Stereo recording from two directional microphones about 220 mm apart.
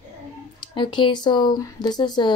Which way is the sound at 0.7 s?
20° left (ahead or behind).